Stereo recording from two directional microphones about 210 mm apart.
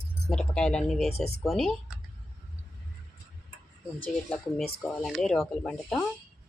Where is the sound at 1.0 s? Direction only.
30° left (ahead or behind).